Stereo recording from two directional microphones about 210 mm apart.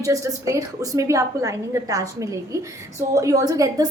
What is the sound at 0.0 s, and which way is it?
A woman's voice, 15° right (ahead or behind).